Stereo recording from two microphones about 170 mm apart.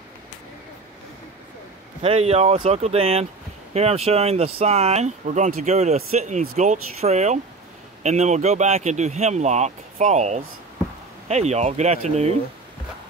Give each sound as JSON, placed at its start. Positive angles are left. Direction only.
{"t": 2.0, "sound": "speech", "side_deg": -35}